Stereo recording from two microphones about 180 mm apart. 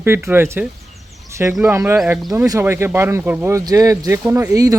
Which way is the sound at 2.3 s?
15° right (ahead or behind).